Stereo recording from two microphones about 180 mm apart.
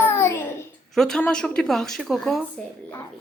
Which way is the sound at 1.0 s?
5° left (ahead or behind).